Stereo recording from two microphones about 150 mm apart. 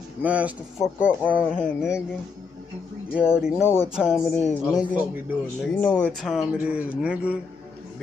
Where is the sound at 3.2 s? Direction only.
5° right (ahead or behind).